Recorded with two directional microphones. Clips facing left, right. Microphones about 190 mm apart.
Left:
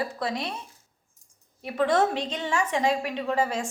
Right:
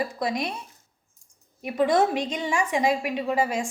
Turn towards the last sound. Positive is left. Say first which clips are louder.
# right 1 dB
turn(degrees=-10)  # may be behind; listen again after turning